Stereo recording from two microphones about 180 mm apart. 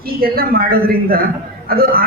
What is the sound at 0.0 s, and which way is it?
A man's voice, 55° right (ahead or behind).